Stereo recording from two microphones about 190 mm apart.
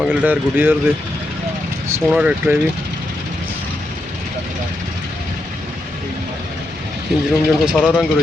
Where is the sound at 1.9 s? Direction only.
10° right (ahead or behind).